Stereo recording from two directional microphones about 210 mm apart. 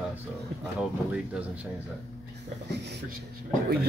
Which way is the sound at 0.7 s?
5° right (ahead or behind).